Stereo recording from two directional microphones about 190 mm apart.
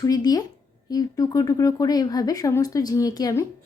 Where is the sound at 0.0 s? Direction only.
20° left (ahead or behind).